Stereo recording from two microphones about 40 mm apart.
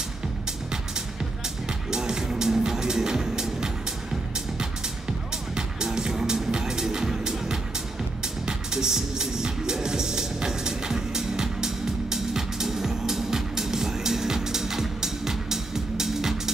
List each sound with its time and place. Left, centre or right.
1.9 s music: centre
5.5 s music: centre